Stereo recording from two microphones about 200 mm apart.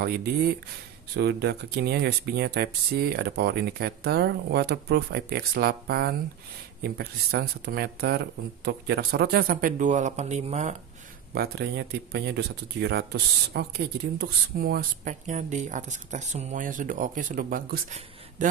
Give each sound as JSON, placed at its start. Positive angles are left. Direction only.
{"t": 0.0, "sound": "speech", "side_deg": -50}
{"t": 11.3, "sound": "speech", "side_deg": -55}